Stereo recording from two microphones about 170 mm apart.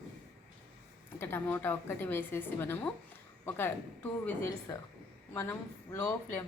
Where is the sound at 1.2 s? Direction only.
15° left (ahead or behind).